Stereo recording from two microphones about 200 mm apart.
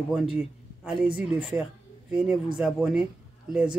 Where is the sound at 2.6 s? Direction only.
Centre (ahead or behind).